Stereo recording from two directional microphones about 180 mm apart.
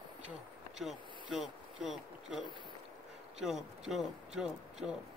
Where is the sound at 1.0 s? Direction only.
25° right (ahead or behind).